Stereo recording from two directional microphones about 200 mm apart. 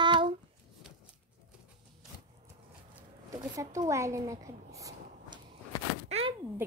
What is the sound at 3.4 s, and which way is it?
Speech, 15° right (ahead or behind).